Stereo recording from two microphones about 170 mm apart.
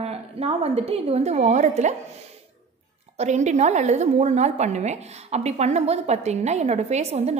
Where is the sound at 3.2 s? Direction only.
45° right (ahead or behind).